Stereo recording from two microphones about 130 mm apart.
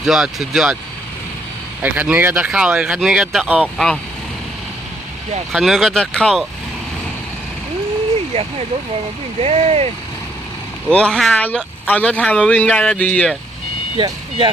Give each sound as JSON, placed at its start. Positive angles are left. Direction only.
{"t": 0.0, "sound": "speech", "side_deg": -5}
{"t": 1.8, "sound": "speech", "side_deg": -15}
{"t": 5.5, "sound": "speech", "side_deg": 0}
{"t": 8.3, "sound": "speech", "side_deg": -50}
{"t": 10.8, "sound": "speech", "side_deg": 5}
{"t": 13.9, "sound": "speech", "side_deg": -40}